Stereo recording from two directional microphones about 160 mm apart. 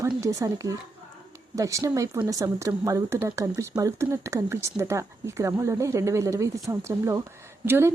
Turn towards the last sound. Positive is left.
turn(degrees=-15)  # may be behind; listen again after turning